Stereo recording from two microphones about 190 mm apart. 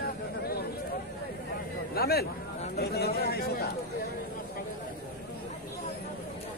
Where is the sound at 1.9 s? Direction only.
55° left (ahead or behind).